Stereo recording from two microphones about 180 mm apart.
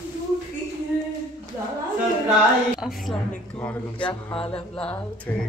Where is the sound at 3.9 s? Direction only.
30° left (ahead or behind).